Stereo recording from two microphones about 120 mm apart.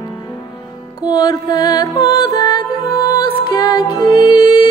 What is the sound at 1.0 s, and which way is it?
Music, 35° left (ahead or behind).